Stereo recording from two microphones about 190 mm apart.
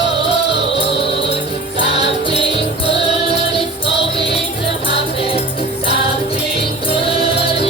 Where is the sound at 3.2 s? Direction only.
30° left (ahead or behind).